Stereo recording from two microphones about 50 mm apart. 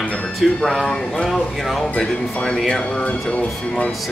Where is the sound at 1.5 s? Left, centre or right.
Centre.